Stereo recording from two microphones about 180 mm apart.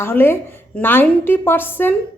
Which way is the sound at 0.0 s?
10° left (ahead or behind).